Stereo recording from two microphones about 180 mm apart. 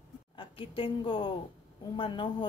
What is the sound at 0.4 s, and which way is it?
A woman's voice, 30° left (ahead or behind).